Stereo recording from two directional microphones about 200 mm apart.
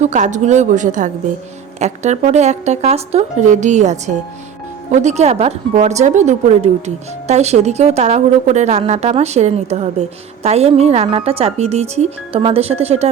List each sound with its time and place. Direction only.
0.0 s speech: 35° right (ahead or behind)